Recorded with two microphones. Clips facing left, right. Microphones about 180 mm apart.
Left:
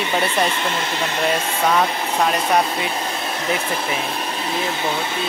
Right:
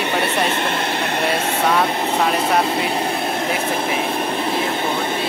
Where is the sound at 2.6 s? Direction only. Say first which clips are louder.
Right 4 dB; 60° right (ahead or behind).